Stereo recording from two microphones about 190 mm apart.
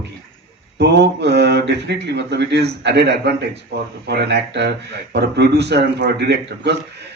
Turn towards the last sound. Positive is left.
turn(degrees=-60)  # may be behind; listen again after turning